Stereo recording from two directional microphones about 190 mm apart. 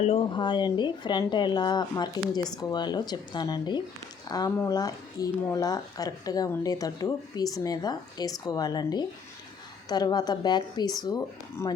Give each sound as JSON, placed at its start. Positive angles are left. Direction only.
{"t": 0.0, "sound": "speech", "side_deg": 30}